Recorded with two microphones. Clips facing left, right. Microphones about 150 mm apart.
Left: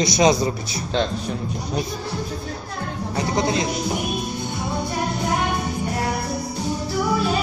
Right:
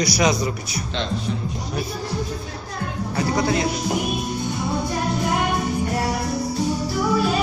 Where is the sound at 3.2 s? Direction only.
25° left (ahead or behind).